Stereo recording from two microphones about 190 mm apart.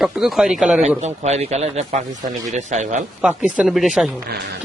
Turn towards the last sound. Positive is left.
turn(degrees=0)  # may be behind; listen again after turning